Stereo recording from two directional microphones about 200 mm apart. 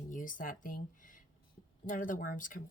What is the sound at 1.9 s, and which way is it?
Speech, 40° left (ahead or behind).